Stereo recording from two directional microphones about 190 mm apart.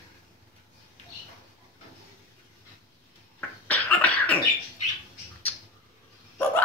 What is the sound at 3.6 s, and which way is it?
Cough, 10° left (ahead or behind).